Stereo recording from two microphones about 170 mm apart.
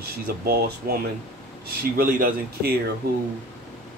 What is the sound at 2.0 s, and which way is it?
Speech, 60° right (ahead or behind).